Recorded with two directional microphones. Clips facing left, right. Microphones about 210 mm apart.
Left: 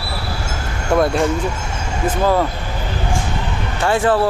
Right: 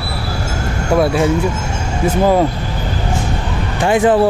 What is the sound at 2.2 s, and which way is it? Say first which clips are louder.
Speech: right 4 dB; 15° right (ahead or behind).